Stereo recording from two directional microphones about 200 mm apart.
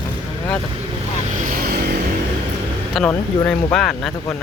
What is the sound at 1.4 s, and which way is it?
Vehicle, 45° right (ahead or behind).